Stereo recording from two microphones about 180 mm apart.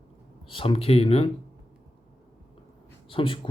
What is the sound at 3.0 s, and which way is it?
Speech, 30° left (ahead or behind).